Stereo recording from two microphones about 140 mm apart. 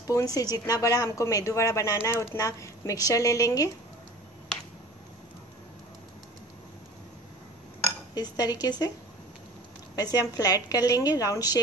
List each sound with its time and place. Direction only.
0.0 s a woman's voice: 25° left (ahead or behind)
8.1 s a woman's voice: 30° left (ahead or behind)
9.9 s a woman's voice: 25° left (ahead or behind)